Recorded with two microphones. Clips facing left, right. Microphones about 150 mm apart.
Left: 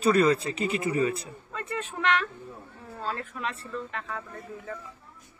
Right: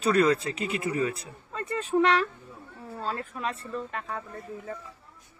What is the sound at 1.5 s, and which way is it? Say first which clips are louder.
Speech: right 7 dB; 35° right (ahead or behind).